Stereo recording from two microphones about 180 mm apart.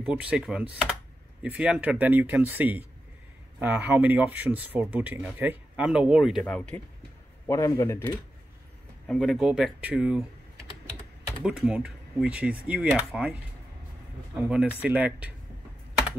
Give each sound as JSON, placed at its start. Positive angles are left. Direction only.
{"t": 0.0, "sound": "speech", "side_deg": -5}
{"t": 7.4, "sound": "speech", "side_deg": 15}
{"t": 9.0, "sound": "speech", "side_deg": 0}
{"t": 11.4, "sound": "speech", "side_deg": -5}
{"t": 14.5, "sound": "speech", "side_deg": -5}